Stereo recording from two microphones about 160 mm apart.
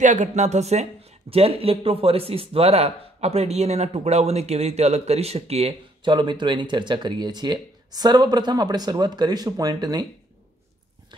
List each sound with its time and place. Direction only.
0.0 s a man's voice: 50° right (ahead or behind)
6.1 s speech: 30° right (ahead or behind)